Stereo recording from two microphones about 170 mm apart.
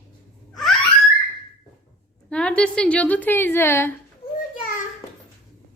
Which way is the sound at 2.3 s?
5° left (ahead or behind).